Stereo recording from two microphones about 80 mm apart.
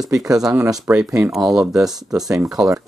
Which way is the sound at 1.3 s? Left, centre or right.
Centre.